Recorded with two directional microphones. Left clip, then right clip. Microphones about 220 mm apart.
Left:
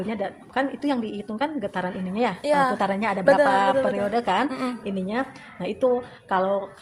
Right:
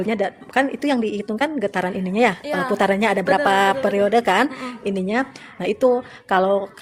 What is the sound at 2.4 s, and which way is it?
Speech, 20° left (ahead or behind).